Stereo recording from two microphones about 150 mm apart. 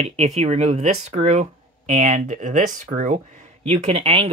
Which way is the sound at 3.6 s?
45° right (ahead or behind).